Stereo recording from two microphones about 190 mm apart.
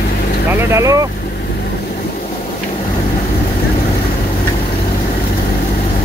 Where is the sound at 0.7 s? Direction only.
15° right (ahead or behind).